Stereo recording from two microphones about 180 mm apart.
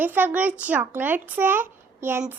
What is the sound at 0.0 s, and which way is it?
A child's voice, 10° right (ahead or behind).